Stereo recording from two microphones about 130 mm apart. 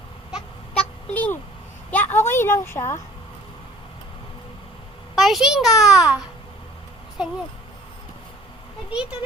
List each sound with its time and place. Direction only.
0.8 s a sound: 10° left (ahead or behind)
1.9 s a woman's voice: 15° left (ahead or behind)
5.1 s a child's voice: centre (ahead or behind)
8.9 s speech: 10° right (ahead or behind)